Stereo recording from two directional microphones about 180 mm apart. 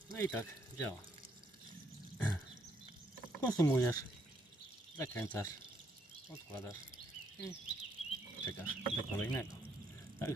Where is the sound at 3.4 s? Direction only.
20° left (ahead or behind).